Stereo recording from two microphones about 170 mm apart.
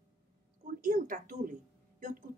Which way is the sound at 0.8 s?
50° right (ahead or behind).